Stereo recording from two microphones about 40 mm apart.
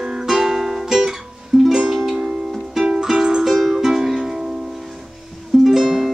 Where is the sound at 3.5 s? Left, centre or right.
Centre.